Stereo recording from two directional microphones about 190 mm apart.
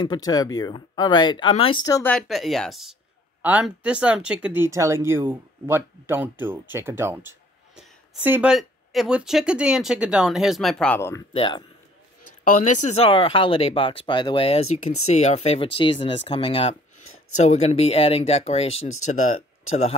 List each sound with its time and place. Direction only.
0.0 s speech: 20° left (ahead or behind)
2.1 s speech: centre (ahead or behind)
11.3 s speech: 25° left (ahead or behind)
12.4 s speech: 40° left (ahead or behind)
17.1 s a sound: 90° left
17.4 s speech: 35° left (ahead or behind)